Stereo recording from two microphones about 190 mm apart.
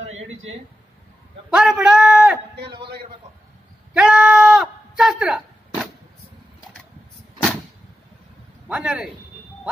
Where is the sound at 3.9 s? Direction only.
5° right (ahead or behind).